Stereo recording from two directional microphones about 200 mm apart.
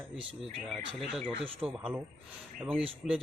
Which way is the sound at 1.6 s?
5° right (ahead or behind).